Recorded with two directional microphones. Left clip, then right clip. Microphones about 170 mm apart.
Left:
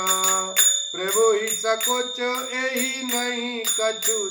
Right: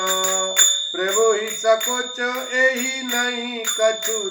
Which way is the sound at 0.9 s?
10° left (ahead or behind).